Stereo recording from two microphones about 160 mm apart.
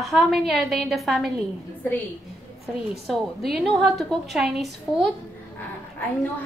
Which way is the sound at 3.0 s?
Centre (ahead or behind).